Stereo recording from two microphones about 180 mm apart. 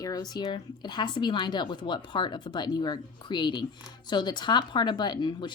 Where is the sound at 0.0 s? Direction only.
20° left (ahead or behind).